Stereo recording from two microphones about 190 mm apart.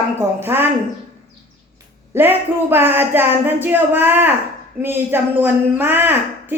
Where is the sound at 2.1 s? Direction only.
10° right (ahead or behind).